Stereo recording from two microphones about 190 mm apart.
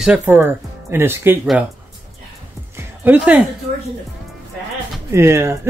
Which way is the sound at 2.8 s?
10° right (ahead or behind).